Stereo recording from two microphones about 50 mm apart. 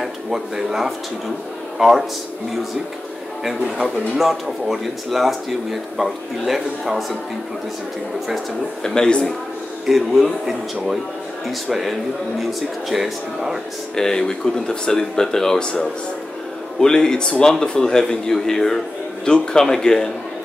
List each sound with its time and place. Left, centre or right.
0.0 s speech: centre
3.6 s speech: centre
4.2 s speech: centre
8.8 s speech: centre
9.8 s speech: centre
13.9 s speech: centre